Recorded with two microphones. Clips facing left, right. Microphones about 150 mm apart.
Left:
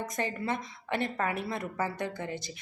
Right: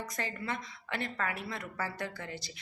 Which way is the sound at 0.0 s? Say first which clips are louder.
Left 5 dB; 20° left (ahead or behind).